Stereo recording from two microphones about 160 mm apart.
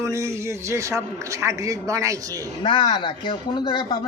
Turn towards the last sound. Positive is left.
turn(degrees=25)  # may be behind; listen again after turning